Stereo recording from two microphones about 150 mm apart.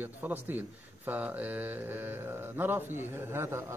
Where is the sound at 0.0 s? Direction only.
15° right (ahead or behind).